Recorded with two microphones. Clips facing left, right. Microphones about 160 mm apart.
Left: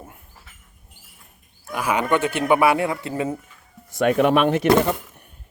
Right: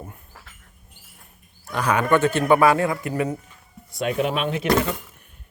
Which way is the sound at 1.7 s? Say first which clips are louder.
Right 1 dB; 10° left (ahead or behind).